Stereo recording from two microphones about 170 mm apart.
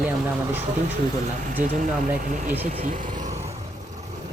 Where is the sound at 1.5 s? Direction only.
45° right (ahead or behind).